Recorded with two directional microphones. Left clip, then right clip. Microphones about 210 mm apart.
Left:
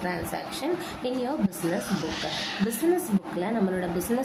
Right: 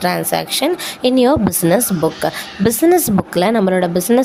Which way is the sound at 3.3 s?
55° right (ahead or behind).